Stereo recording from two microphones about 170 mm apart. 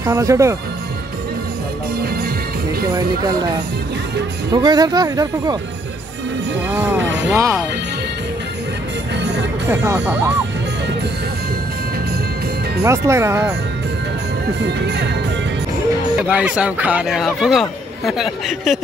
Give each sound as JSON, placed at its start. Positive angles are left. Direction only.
{"t": 0.0, "sound": "speech", "side_deg": -20}
{"t": 4.5, "sound": "speech", "side_deg": -25}
{"t": 6.7, "sound": "speech", "side_deg": -10}
{"t": 9.2, "sound": "music", "side_deg": -85}
{"t": 9.7, "sound": "speech", "side_deg": -10}
{"t": 12.8, "sound": "speech", "side_deg": -15}
{"t": 14.7, "sound": "speech", "side_deg": -80}
{"t": 16.2, "sound": "a man's voice", "side_deg": -5}